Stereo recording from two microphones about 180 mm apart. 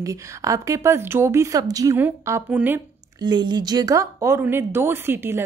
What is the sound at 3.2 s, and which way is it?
A woman's voice, 25° right (ahead or behind).